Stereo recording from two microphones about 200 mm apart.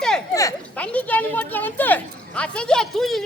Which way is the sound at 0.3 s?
10° left (ahead or behind).